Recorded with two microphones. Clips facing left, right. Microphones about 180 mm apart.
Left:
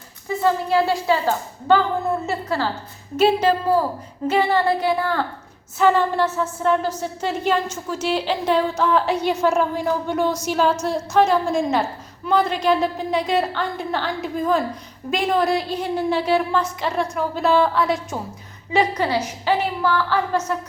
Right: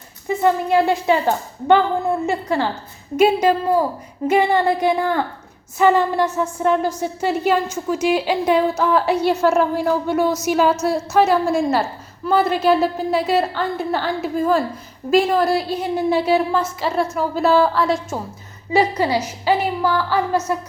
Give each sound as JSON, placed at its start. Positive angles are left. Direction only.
{"t": 0.4, "sound": "a woman's voice", "side_deg": -20}
{"t": 2.2, "sound": "a woman's voice", "side_deg": -15}
{"t": 18.8, "sound": "a woman's voice", "side_deg": -10}